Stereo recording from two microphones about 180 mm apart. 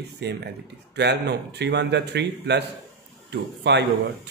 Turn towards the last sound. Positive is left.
turn(degrees=-70)  # may be behind; listen again after turning